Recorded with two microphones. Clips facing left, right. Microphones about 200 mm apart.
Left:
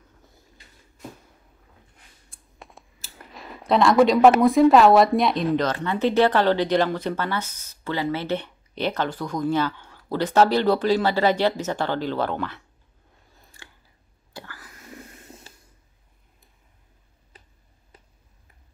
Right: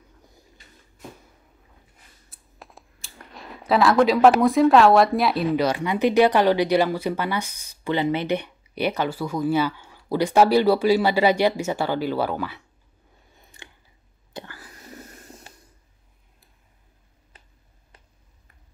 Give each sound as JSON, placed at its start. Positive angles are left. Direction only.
{"t": 2.2, "sound": "speech", "side_deg": 0}
{"t": 13.5, "sound": "scissors", "side_deg": -20}
{"t": 14.3, "sound": "a sound", "side_deg": -25}
{"t": 15.1, "sound": "snort", "side_deg": 0}